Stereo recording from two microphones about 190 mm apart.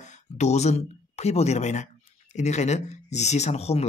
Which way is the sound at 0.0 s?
40° left (ahead or behind).